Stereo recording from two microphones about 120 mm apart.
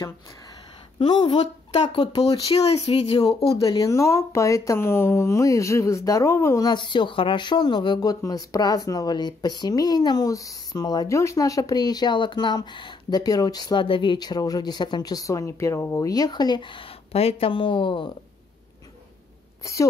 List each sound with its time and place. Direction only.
1.1 s speech: 40° left (ahead or behind)
1.7 s speech: 55° left (ahead or behind)
3.6 s speech: 30° left (ahead or behind)
6.7 s speech: 40° left (ahead or behind)
17.1 s speech: 55° left (ahead or behind)
19.6 s speech: 25° left (ahead or behind)